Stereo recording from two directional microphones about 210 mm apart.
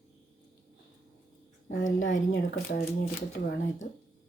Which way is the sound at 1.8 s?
65° left (ahead or behind).